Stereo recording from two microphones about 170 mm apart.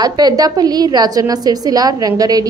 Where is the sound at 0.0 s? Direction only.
25° right (ahead or behind).